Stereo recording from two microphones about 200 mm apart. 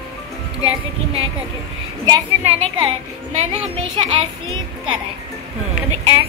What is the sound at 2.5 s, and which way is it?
A child's voice, 25° right (ahead or behind).